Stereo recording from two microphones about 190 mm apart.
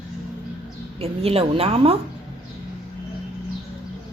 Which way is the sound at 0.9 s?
30° right (ahead or behind).